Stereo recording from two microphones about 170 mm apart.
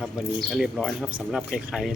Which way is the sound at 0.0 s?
Centre (ahead or behind).